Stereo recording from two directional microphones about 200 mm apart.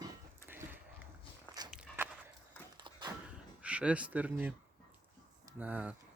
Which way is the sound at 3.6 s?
5° right (ahead or behind).